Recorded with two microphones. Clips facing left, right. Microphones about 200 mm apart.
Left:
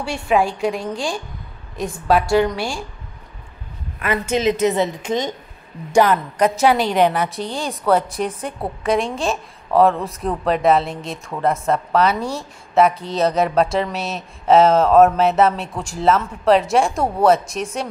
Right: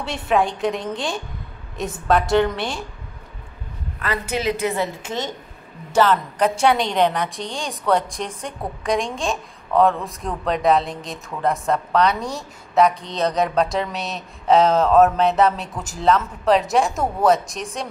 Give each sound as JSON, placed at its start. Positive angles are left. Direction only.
{"t": 0.1, "sound": "speech", "side_deg": 0}
{"t": 2.3, "sound": "speech", "side_deg": 0}
{"t": 4.0, "sound": "a woman's voice", "side_deg": 20}